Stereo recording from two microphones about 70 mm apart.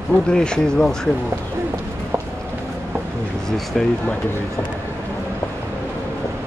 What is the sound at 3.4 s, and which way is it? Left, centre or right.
Speech, centre.